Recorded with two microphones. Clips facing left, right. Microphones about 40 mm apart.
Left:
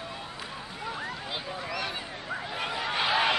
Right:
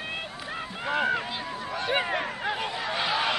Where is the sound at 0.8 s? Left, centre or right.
Right.